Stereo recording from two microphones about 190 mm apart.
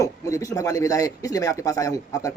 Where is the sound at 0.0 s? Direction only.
15° left (ahead or behind).